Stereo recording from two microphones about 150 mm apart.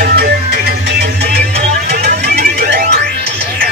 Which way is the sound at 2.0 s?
90° right.